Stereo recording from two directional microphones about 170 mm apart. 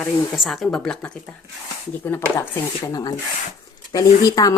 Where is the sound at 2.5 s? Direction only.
20° left (ahead or behind).